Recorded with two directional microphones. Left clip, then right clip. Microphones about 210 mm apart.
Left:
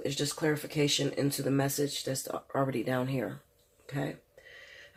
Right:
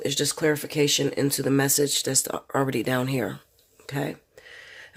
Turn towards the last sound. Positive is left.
turn(degrees=-55)  # may be behind; listen again after turning